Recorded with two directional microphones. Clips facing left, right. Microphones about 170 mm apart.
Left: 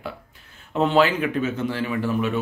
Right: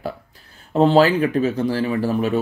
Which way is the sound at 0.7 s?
35° right (ahead or behind).